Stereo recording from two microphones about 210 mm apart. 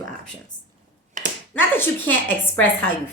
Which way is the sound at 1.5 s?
10° left (ahead or behind).